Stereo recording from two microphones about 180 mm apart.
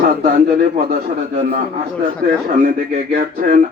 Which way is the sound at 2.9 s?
55° right (ahead or behind).